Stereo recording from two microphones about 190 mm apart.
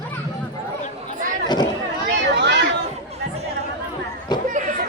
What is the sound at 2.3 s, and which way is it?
Chatter, 65° right (ahead or behind).